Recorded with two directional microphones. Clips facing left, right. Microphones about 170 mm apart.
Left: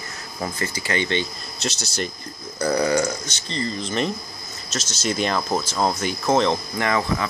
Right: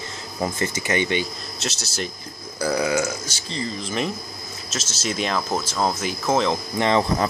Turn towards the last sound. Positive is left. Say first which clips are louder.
# right 3 dB
turn(degrees=-25)  # may be behind; listen again after turning